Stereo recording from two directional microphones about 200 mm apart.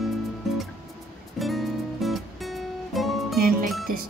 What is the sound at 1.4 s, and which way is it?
Music, centre (ahead or behind).